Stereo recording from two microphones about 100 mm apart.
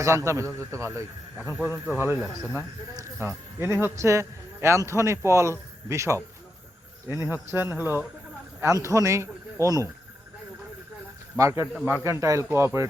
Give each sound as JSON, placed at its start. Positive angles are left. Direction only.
{"t": 0.0, "sound": "speech", "side_deg": -30}
{"t": 1.5, "sound": "speech", "side_deg": -20}
{"t": 2.5, "sound": "speech", "side_deg": 25}
{"t": 3.2, "sound": "speech", "side_deg": -25}
{"t": 8.6, "sound": "speech", "side_deg": -35}
{"t": 11.3, "sound": "speech", "side_deg": -30}